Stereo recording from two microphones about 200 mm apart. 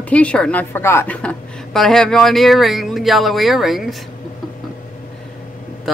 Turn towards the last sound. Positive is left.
turn(degrees=0)  # may be behind; listen again after turning